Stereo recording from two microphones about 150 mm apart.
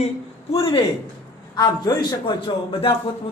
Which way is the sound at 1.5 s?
25° left (ahead or behind).